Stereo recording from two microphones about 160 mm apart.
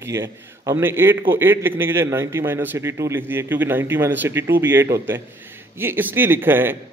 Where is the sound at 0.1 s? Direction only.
15° right (ahead or behind).